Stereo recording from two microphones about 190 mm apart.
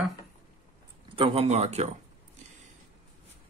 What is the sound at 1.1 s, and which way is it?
Speech, 30° right (ahead or behind).